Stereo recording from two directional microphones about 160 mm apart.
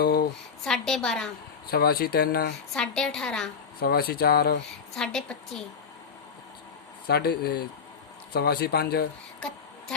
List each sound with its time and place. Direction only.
0.0 s a sound: 80° left
0.6 s a woman's voice: 5° left (ahead or behind)
1.6 s speech: 75° left (ahead or behind)
2.7 s a woman's voice: 5° left (ahead or behind)
3.8 s speech: 75° left (ahead or behind)
4.9 s a woman's voice: 5° left (ahead or behind)
7.1 s speech: 80° left